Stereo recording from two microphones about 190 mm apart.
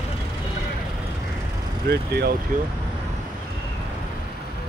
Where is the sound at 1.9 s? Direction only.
55° right (ahead or behind).